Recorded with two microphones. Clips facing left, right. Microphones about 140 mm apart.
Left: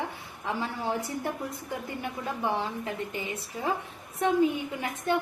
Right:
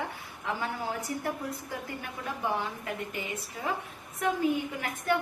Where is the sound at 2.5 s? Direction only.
25° left (ahead or behind).